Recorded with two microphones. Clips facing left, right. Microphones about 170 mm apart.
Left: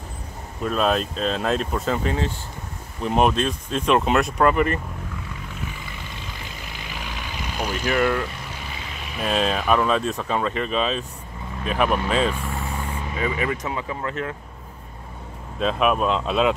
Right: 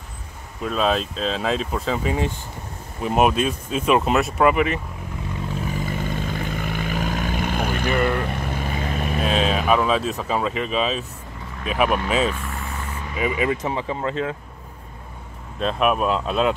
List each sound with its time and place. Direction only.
0.7 s speech: centre (ahead or behind)
5.7 s vehicle: 45° right (ahead or behind)
7.9 s speech: centre (ahead or behind)
8.3 s vehicle: 55° right (ahead or behind)
9.2 s speech: centre (ahead or behind)
13.2 s speech: 20° right (ahead or behind)
15.6 s speech: centre (ahead or behind)